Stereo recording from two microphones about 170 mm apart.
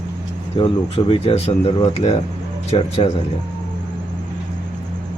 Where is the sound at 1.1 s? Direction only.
35° left (ahead or behind).